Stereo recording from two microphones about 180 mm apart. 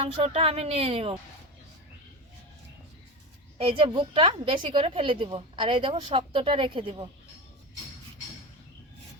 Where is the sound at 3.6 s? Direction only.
30° right (ahead or behind).